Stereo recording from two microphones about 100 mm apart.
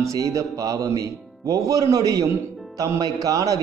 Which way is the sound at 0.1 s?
35° right (ahead or behind).